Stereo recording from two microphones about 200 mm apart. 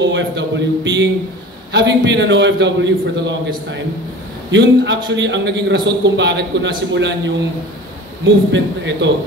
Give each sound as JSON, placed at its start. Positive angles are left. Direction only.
{"t": 0.0, "sound": "a man's voice", "side_deg": -60}
{"t": 8.5, "sound": "a man's voice", "side_deg": -65}